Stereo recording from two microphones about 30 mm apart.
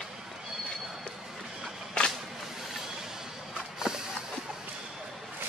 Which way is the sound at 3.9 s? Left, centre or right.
Right.